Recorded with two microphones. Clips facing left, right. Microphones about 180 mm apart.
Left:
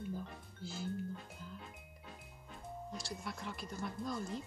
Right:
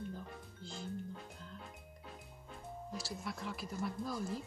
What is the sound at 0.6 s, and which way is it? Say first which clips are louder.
Music: left 4 dB; 5° left (ahead or behind).